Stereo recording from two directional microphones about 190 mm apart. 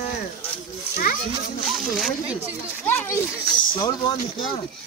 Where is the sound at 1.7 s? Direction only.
Centre (ahead or behind).